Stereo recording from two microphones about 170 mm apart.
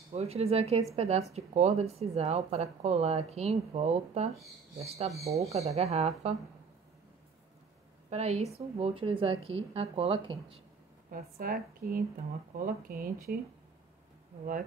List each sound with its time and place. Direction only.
0.1 s speech: 40° right (ahead or behind)
8.1 s speech: 40° right (ahead or behind)
11.1 s speech: 60° right (ahead or behind)